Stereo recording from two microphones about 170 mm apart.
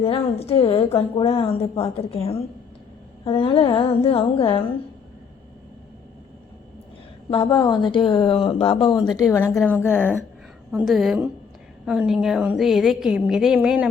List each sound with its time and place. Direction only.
0.0 s a woman's voice: 35° left (ahead or behind)
7.3 s speech: 30° left (ahead or behind)
9.3 s a woman's voice: 15° left (ahead or behind)
10.7 s a woman's voice: centre (ahead or behind)